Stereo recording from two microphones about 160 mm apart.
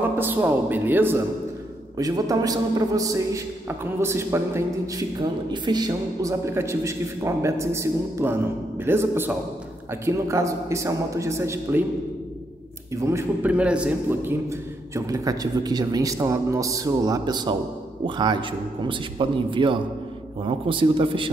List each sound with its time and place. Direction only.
0.2 s a man's voice: 10° right (ahead or behind)
2.0 s a man's voice: 25° right (ahead or behind)
12.9 s a man's voice: 20° right (ahead or behind)
13.5 s a man's voice: 5° right (ahead or behind)
15.0 s a man's voice: 20° right (ahead or behind)